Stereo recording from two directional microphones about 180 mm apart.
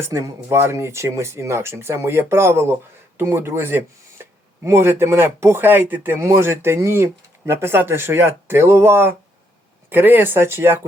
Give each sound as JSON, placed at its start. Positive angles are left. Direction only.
{"t": 0.0, "sound": "speech", "side_deg": -15}